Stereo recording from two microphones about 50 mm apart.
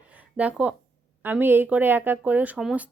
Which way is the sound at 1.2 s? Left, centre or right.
Right.